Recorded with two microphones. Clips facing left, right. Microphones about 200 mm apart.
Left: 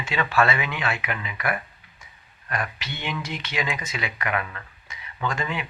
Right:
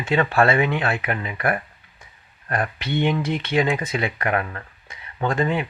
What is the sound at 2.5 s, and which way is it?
Speech, 55° right (ahead or behind).